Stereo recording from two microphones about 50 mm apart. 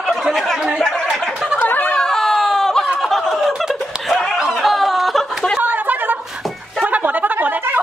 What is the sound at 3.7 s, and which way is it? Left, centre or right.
Snicker, centre.